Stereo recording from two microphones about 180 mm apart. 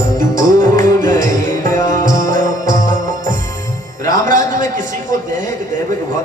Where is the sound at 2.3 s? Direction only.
45° right (ahead or behind).